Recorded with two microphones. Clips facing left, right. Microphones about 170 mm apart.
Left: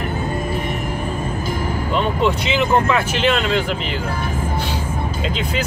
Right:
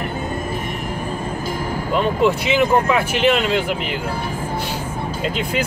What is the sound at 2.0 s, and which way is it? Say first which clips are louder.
Speech: right 2 dB; 5° right (ahead or behind).